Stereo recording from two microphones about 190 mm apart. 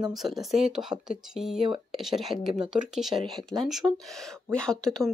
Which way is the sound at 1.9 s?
Centre (ahead or behind).